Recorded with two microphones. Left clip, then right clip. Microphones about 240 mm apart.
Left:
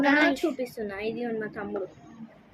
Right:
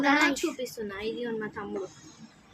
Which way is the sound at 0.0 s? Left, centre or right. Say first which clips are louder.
Left 2 dB; centre.